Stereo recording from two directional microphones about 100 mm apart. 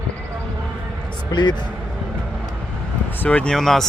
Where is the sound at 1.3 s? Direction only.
45° left (ahead or behind).